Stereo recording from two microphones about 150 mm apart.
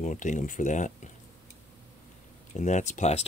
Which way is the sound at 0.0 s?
55° left (ahead or behind).